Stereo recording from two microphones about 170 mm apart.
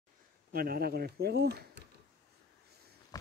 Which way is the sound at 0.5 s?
60° right (ahead or behind).